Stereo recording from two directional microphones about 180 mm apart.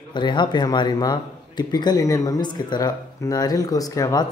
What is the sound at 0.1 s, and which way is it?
Speech, 25° left (ahead or behind).